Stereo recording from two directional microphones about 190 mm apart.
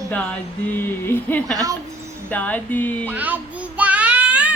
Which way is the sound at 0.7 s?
10° left (ahead or behind).